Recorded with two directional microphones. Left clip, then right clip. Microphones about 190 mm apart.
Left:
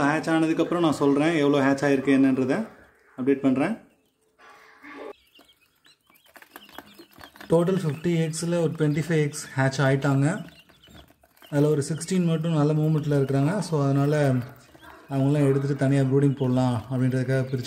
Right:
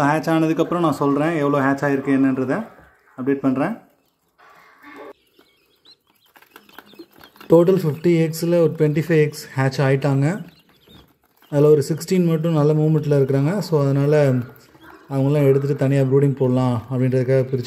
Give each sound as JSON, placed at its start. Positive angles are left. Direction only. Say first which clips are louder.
{"t": 0.0, "sound": "speech", "louder": "right 5 dB", "side_deg": -25}
{"t": 7.4, "sound": "speech", "louder": "right 8 dB", "side_deg": -20}
{"t": 11.5, "sound": "speech", "louder": "right 9 dB", "side_deg": -20}